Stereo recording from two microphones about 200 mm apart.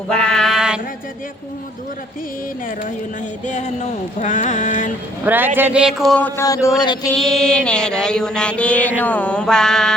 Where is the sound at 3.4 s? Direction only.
35° left (ahead or behind).